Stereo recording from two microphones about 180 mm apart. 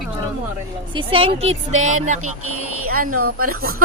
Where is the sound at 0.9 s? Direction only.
30° right (ahead or behind).